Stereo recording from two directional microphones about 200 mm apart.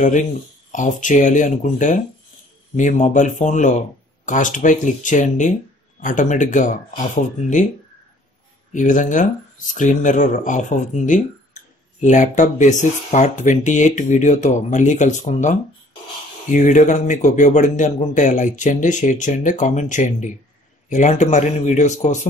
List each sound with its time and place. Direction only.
0.0 s speech: 40° left (ahead or behind)
8.7 s speech: 40° left (ahead or behind)
16.5 s speech: 40° left (ahead or behind)